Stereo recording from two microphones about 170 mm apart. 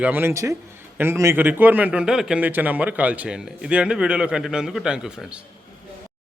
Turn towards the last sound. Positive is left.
turn(degrees=-5)  # may be behind; listen again after turning